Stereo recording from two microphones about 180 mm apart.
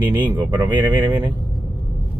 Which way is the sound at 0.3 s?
10° right (ahead or behind).